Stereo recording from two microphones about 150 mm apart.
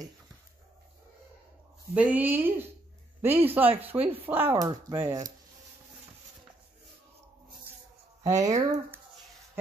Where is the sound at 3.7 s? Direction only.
10° right (ahead or behind).